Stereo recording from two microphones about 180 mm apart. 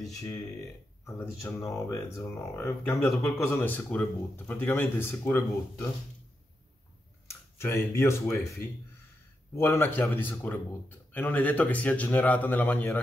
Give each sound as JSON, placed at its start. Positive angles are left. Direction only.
{"t": 1.0, "sound": "speech", "side_deg": 15}
{"t": 7.6, "sound": "speech", "side_deg": 15}
{"t": 9.6, "sound": "speech", "side_deg": 10}